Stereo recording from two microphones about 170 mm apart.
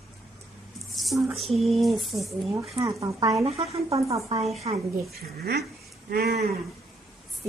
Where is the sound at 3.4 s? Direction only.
35° right (ahead or behind).